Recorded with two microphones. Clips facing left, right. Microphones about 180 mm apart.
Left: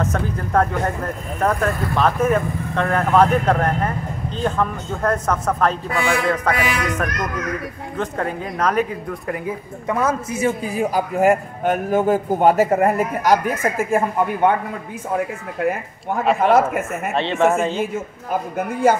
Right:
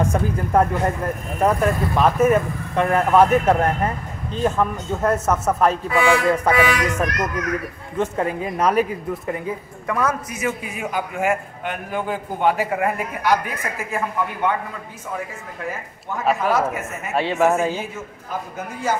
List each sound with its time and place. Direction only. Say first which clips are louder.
0.0 s a man's voice: right 2 dB; 10° right (ahead or behind)
9.8 s a man's voice: left 2 dB; 25° left (ahead or behind); by 14.5 s 50° left (ahead or behind)
16.3 s a man's voice: left 5 dB; 55° left (ahead or behind)
17.1 s a man's voice: even; 10° right (ahead or behind)
18.6 s a man's voice: left 8 dB; 55° left (ahead or behind)